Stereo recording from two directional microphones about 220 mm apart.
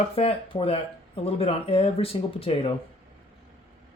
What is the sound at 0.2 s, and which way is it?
Speech, 25° left (ahead or behind).